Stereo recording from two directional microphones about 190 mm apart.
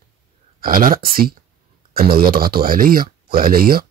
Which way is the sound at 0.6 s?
50° right (ahead or behind).